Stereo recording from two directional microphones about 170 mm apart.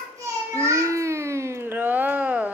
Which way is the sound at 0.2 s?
15° right (ahead or behind).